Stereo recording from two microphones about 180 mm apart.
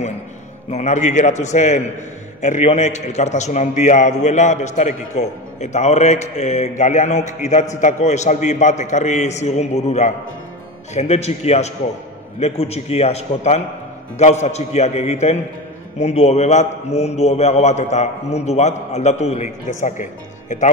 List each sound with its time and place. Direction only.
0.7 s a man's voice: 40° left (ahead or behind)